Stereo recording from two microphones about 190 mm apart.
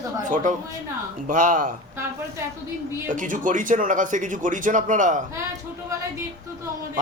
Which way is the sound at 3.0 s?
45° right (ahead or behind).